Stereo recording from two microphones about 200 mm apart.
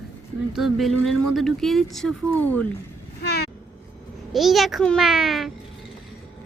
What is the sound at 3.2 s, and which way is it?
Vehicle, 55° left (ahead or behind).